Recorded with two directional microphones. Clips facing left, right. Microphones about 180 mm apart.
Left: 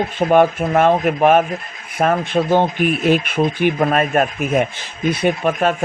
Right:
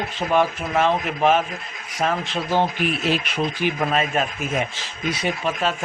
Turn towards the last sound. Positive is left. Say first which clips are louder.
# left 7 dB
turn(degrees=55)  # may be behind; listen again after turning